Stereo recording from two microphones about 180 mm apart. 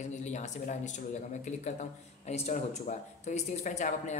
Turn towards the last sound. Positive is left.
turn(degrees=45)  # may be behind; listen again after turning